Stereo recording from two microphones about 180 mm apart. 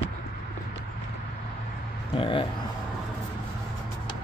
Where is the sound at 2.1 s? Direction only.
30° left (ahead or behind).